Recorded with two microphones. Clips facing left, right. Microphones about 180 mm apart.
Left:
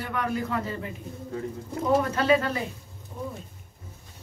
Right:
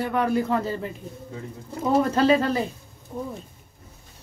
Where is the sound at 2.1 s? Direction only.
35° right (ahead or behind).